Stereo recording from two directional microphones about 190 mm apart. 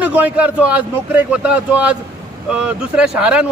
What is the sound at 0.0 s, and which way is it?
Speech, 10° right (ahead or behind).